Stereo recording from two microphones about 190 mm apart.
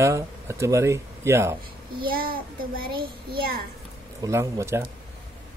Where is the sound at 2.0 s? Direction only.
50° right (ahead or behind).